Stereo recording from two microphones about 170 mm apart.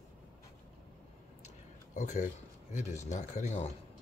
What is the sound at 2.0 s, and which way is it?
Speech, 45° left (ahead or behind).